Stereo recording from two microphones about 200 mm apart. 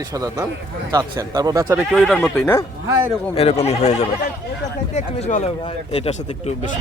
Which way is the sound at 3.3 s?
30° left (ahead or behind).